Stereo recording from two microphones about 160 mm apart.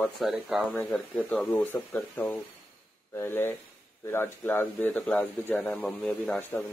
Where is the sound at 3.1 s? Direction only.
15° left (ahead or behind).